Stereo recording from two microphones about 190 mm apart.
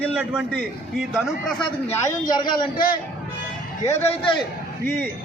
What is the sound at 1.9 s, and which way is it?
Speech, 20° left (ahead or behind).